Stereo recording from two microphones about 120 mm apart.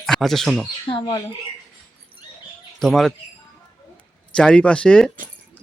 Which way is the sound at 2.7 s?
5° left (ahead or behind).